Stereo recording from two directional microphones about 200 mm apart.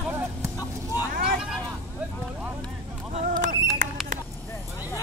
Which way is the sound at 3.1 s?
40° right (ahead or behind).